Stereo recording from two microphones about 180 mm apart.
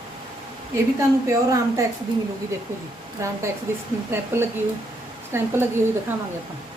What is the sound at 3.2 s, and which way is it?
A woman's voice, 15° right (ahead or behind).